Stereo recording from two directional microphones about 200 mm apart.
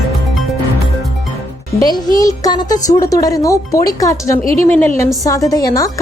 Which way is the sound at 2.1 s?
20° left (ahead or behind).